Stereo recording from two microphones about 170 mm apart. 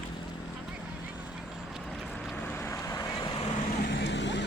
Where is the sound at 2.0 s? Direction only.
5° left (ahead or behind); by 3.5 s 25° left (ahead or behind).